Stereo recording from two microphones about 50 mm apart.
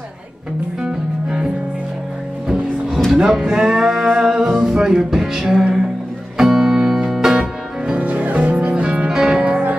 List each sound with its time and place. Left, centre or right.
0.8 s music: centre
3.2 s music: centre
8.0 s music: right
9.4 s music: right